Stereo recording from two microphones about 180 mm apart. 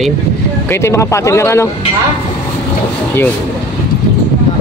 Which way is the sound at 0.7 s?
15° left (ahead or behind).